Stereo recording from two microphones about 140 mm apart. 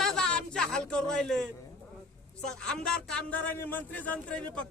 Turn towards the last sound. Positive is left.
turn(degrees=10)  # may be behind; listen again after turning